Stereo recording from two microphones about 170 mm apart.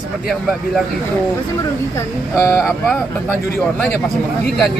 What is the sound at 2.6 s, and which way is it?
Speech, centre (ahead or behind).